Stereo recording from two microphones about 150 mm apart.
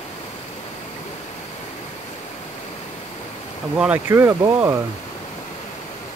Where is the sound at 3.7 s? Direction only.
10° right (ahead or behind).